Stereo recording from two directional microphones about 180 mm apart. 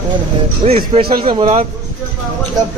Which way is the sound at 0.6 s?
30° right (ahead or behind).